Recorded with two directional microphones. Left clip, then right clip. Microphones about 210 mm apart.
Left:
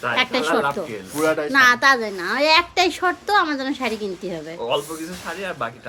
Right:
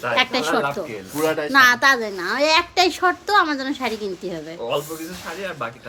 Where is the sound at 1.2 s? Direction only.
5° right (ahead or behind).